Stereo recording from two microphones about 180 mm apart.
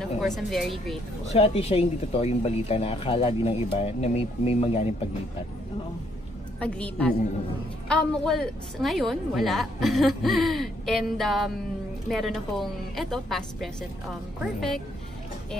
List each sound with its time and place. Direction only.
0.4 s a woman's voice: centre (ahead or behind)
1.2 s speech: 35° left (ahead or behind)
6.6 s a woman's voice: 5° left (ahead or behind)